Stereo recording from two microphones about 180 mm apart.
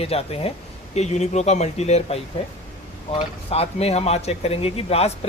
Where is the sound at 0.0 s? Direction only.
35° left (ahead or behind).